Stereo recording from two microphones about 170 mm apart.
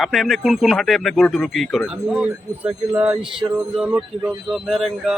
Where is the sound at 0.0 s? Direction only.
Centre (ahead or behind).